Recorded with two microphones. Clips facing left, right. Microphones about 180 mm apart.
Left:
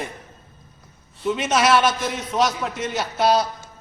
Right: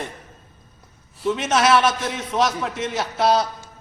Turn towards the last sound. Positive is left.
turn(degrees=0)  # may be behind; listen again after turning